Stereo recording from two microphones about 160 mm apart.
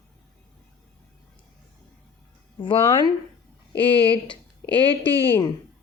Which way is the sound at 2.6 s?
30° left (ahead or behind).